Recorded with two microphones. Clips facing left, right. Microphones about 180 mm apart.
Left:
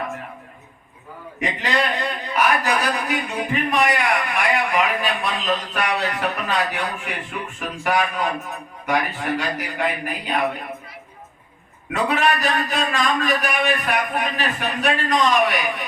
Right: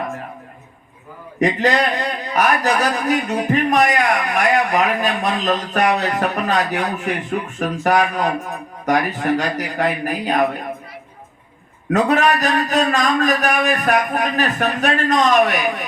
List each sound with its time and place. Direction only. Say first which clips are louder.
1.4 s a man's voice: right 6 dB; 40° right (ahead or behind)
11.9 s a man's voice: right 5 dB; 40° right (ahead or behind)